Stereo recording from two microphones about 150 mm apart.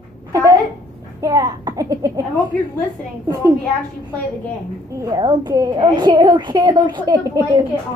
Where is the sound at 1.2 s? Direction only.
25° right (ahead or behind).